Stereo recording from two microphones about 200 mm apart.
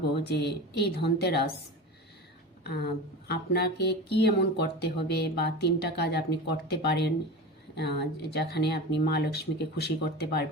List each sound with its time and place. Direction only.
0.3 s speech: 55° left (ahead or behind)
2.6 s speech: 55° left (ahead or behind)